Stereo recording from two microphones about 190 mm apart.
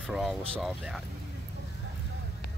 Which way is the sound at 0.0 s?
Centre (ahead or behind).